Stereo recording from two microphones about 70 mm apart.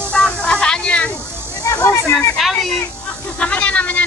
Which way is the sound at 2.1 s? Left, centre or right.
Centre.